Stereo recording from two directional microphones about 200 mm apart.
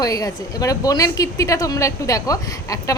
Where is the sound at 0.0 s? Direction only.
15° left (ahead or behind).